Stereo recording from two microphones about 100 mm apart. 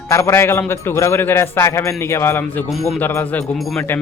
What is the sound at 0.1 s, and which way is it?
Speech, 30° left (ahead or behind).